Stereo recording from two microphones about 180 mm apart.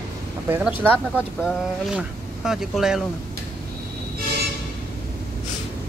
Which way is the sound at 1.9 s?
Centre (ahead or behind).